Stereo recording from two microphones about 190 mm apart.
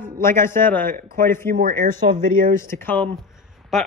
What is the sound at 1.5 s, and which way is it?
Speech, 45° right (ahead or behind).